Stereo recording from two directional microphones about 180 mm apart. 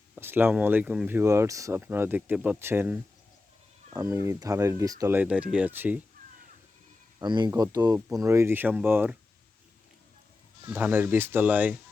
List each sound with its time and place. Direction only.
0.2 s speech: 10° right (ahead or behind)
7.2 s speech: 25° right (ahead or behind)
10.7 s speech: 10° right (ahead or behind)